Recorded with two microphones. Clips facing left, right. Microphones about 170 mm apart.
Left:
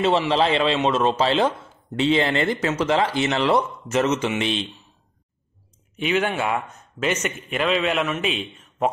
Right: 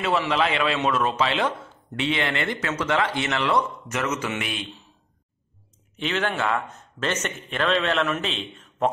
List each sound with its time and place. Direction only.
0.3 s speech: 30° left (ahead or behind)
5.9 s a man's voice: 10° left (ahead or behind)